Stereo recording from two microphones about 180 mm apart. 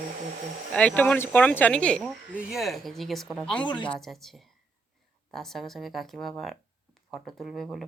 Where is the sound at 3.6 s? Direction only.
25° left (ahead or behind).